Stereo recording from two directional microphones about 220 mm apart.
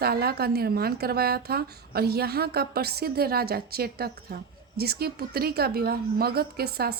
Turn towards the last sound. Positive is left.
turn(degrees=-45)  # may be behind; listen again after turning